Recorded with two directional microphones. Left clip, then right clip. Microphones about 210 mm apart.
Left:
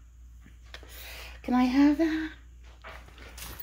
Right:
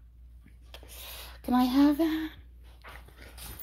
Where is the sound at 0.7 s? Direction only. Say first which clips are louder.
Left 1 dB; centre (ahead or behind).